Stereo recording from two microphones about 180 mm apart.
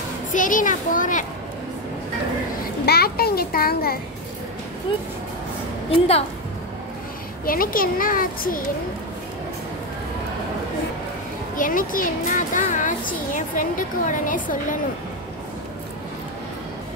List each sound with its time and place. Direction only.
0.3 s a child's voice: 45° left (ahead or behind)
2.8 s a child's voice: 60° left (ahead or behind)
5.9 s a woman's voice: 35° left (ahead or behind)
7.4 s a child's voice: 50° left (ahead or behind)
11.5 s a child's voice: 50° left (ahead or behind)